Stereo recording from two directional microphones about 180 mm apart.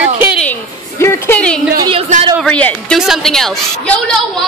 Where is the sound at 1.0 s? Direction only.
15° left (ahead or behind).